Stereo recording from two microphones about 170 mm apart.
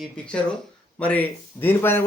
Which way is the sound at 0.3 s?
5° left (ahead or behind).